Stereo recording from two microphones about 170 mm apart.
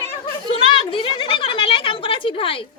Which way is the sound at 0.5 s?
30° left (ahead or behind).